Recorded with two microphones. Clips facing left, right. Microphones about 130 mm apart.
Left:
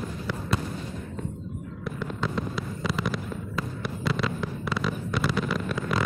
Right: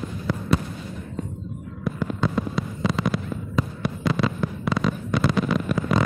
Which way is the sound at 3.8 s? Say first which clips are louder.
Right 3 dB; centre (ahead or behind).